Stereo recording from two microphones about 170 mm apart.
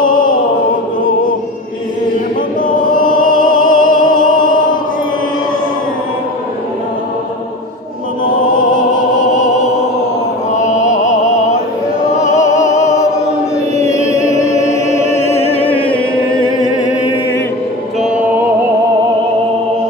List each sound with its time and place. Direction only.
0.0 s mantra: 50° left (ahead or behind)
2.6 s music: 50° left (ahead or behind)
8.5 s opera: 50° left (ahead or behind)
10.5 s music: 45° left (ahead or behind)
14.5 s chant: 45° left (ahead or behind); by 16.6 s 25° left (ahead or behind)